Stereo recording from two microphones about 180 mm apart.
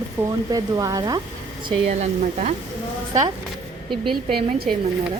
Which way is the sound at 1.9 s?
40° right (ahead or behind).